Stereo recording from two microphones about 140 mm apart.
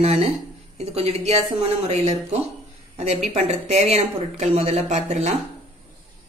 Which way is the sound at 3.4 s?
55° right (ahead or behind).